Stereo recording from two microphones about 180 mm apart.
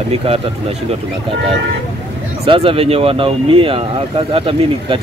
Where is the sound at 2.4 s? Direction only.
30° right (ahead or behind).